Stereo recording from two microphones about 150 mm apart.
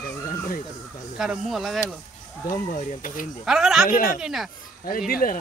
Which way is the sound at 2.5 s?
65° left (ahead or behind).